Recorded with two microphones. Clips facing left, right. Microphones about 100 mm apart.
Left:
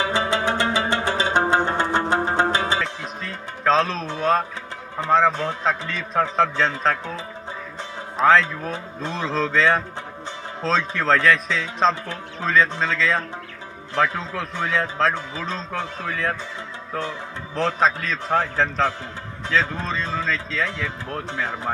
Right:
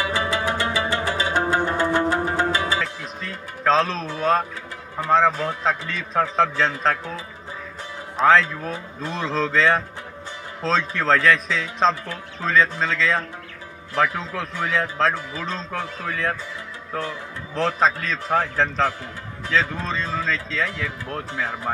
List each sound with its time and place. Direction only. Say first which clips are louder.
0.0 s music: left 2 dB; 25° left (ahead or behind)
2.8 s music: left 1 dB; centre (ahead or behind)
4.9 s a man's voice: even; centre (ahead or behind)
8.2 s a man's voice: even; centre (ahead or behind)
17.6 s a man's voice: even; centre (ahead or behind)